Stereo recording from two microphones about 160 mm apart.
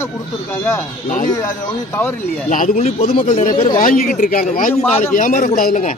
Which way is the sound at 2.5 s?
50° left (ahead or behind).